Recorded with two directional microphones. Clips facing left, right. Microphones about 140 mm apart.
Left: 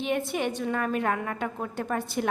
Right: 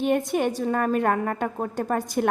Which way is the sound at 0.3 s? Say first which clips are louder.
Right 5 dB; 45° right (ahead or behind).